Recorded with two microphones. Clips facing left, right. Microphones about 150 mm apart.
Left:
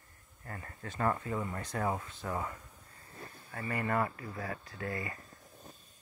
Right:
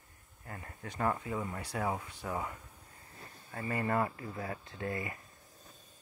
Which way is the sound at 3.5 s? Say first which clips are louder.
Right 1 dB; 25° right (ahead or behind).